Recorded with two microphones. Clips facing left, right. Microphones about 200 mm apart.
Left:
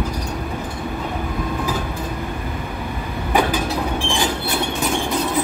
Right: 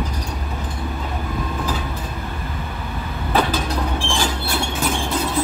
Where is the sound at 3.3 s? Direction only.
15° left (ahead or behind).